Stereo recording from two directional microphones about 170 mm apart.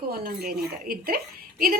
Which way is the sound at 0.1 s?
65° right (ahead or behind).